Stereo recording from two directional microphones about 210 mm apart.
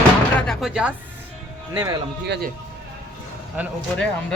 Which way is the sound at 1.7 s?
15° right (ahead or behind).